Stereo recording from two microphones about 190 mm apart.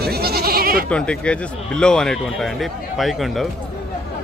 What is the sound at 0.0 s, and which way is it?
Goat, 55° right (ahead or behind).